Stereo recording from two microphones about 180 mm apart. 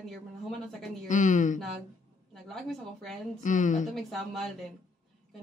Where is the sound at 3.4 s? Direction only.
45° left (ahead or behind).